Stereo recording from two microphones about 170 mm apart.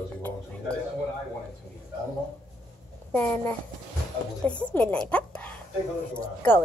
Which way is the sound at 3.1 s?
10° left (ahead or behind).